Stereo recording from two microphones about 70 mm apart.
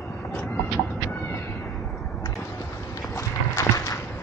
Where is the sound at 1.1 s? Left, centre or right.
Left.